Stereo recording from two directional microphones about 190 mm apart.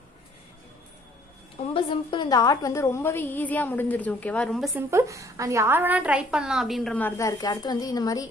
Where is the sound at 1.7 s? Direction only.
25° left (ahead or behind); by 4.7 s 5° left (ahead or behind).